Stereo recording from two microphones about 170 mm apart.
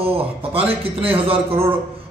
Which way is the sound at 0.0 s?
30° right (ahead or behind).